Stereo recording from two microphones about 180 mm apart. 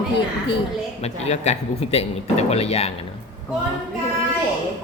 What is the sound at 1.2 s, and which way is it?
Speech, 40° left (ahead or behind).